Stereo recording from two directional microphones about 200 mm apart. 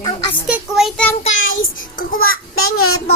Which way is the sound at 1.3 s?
80° left.